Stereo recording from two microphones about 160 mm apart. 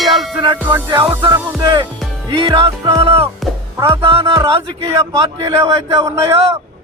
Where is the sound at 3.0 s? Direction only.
35° right (ahead or behind).